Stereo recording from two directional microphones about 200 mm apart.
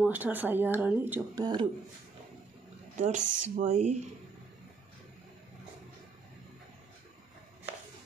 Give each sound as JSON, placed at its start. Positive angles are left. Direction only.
{"t": 0.0, "sound": "speech", "side_deg": -10}
{"t": 1.4, "sound": "speech", "side_deg": -20}
{"t": 3.0, "sound": "speech", "side_deg": -35}